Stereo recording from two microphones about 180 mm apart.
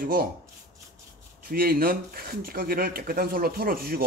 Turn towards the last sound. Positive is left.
turn(degrees=-55)  # may be behind; listen again after turning